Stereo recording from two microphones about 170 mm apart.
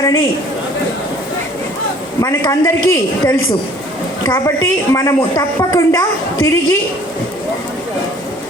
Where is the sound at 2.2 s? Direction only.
15° left (ahead or behind).